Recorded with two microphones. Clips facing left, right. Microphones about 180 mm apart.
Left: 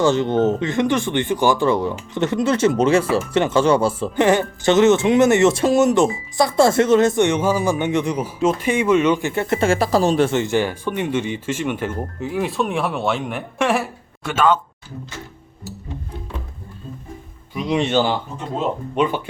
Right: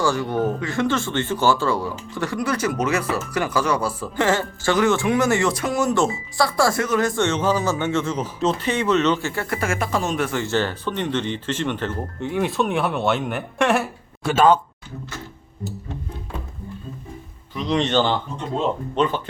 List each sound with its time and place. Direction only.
0.0 s speech: 20° left (ahead or behind)
10.4 s speech: 15° left (ahead or behind)
14.3 s speech: 35° right (ahead or behind)
17.5 s speech: 10° left (ahead or behind)